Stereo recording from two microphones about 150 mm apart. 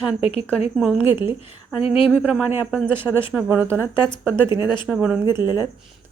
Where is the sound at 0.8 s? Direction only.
10° right (ahead or behind).